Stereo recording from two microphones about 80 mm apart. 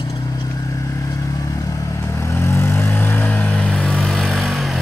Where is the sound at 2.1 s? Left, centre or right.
Left.